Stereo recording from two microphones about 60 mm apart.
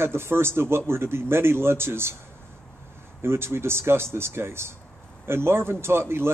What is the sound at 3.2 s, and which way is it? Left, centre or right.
A man's voice, right.